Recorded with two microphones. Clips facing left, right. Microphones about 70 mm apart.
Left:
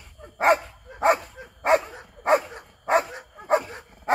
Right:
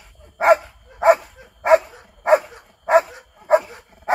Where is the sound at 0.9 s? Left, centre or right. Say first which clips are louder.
Right 6 dB; centre.